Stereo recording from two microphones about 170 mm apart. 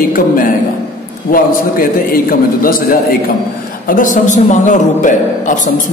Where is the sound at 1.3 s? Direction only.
55° left (ahead or behind).